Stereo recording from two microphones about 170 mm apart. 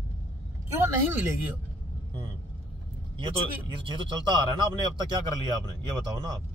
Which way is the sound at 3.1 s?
30° right (ahead or behind).